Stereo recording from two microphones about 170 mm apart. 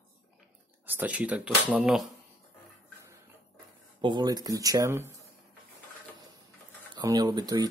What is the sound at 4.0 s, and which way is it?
Speech, 25° right (ahead or behind).